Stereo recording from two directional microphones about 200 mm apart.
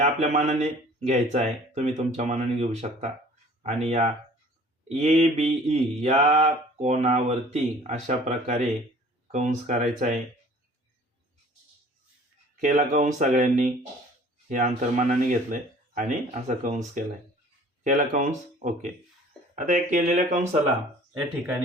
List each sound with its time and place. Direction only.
0.0 s mantra: 35° right (ahead or behind)
9.2 s speech: 35° right (ahead or behind)
12.5 s mantra: 40° right (ahead or behind)